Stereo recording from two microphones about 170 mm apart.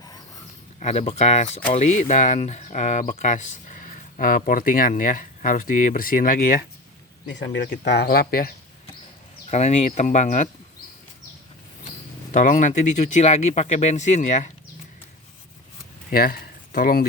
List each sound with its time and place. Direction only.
0.8 s speech: 45° left (ahead or behind)
7.3 s speech: 90° left; by 8.5 s 60° left (ahead or behind)
9.5 s speech: 40° left (ahead or behind)
12.3 s speech: 50° left (ahead or behind)
16.0 s speech: 60° left (ahead or behind)